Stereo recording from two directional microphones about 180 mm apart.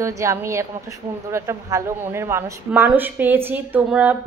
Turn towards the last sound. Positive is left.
turn(degrees=-10)  # may be behind; listen again after turning